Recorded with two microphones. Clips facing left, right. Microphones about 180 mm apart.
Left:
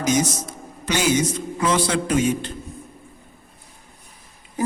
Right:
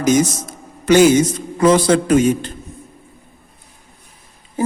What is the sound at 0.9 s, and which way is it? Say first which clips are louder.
A man's voice: right 10 dB; 50° right (ahead or behind).